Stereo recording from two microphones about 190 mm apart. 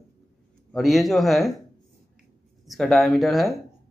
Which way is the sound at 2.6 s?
Centre (ahead or behind).